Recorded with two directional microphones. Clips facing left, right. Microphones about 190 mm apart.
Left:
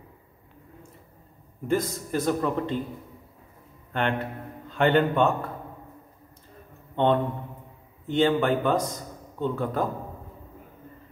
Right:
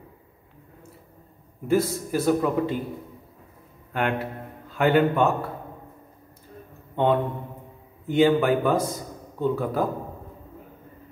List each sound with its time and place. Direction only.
1.7 s a man's voice: 5° right (ahead or behind)
3.9 s a man's voice: 5° right (ahead or behind)
7.0 s a man's voice: 10° right (ahead or behind)